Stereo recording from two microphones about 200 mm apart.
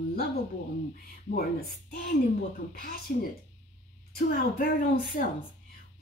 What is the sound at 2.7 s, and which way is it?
Speech, 45° left (ahead or behind).